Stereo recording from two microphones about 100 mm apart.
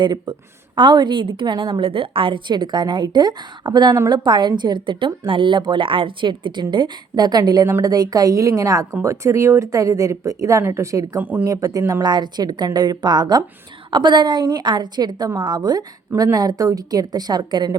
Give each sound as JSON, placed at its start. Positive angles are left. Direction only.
{"t": 0.0, "sound": "a woman's voice", "side_deg": -50}
{"t": 11.2, "sound": "speech", "side_deg": -20}
{"t": 11.4, "sound": "speech", "side_deg": -35}
{"t": 12.0, "sound": "a woman's voice", "side_deg": -45}